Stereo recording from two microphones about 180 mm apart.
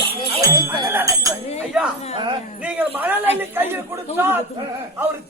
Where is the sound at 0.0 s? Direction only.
30° right (ahead or behind).